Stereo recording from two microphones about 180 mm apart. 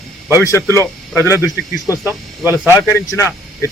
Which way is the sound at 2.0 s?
15° right (ahead or behind).